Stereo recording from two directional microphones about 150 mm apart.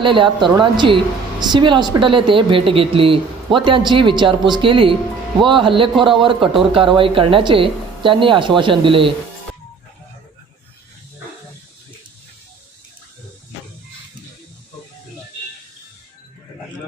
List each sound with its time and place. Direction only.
0.0 s a woman's voice: 35° right (ahead or behind)